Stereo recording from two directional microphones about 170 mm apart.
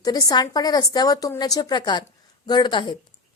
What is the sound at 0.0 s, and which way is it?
A woman's voice, 20° left (ahead or behind).